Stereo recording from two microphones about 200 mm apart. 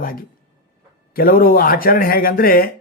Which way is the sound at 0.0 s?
45° left (ahead or behind).